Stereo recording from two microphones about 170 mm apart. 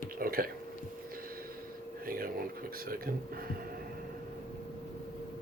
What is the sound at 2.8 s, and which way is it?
Speech, 60° right (ahead or behind).